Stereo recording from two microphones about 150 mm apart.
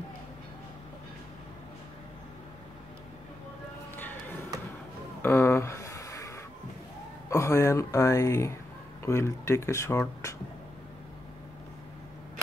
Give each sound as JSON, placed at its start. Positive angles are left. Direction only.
{"t": 3.9, "sound": "music", "side_deg": 10}
{"t": 5.2, "sound": "a sound", "side_deg": 15}
{"t": 7.2, "sound": "speech", "side_deg": 20}